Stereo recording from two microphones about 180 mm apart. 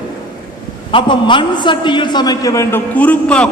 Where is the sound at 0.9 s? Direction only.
30° left (ahead or behind).